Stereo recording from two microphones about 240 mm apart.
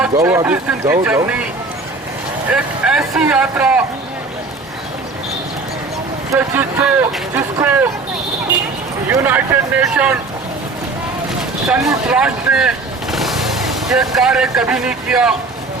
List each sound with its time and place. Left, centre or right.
0.0 s speech: centre
2.5 s speech: centre
6.3 s speech: centre
9.0 s speech: centre
11.7 s vehicle: centre
14.2 s speech: centre